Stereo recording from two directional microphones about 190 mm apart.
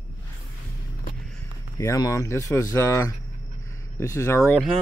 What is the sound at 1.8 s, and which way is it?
Speech, 15° left (ahead or behind).